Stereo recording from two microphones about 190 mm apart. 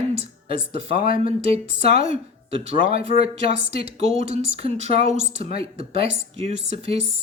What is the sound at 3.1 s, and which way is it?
Speech, 45° left (ahead or behind).